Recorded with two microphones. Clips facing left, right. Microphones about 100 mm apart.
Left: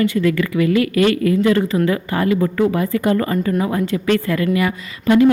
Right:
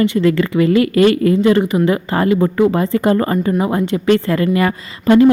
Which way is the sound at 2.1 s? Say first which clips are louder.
Right 3 dB; 30° right (ahead or behind).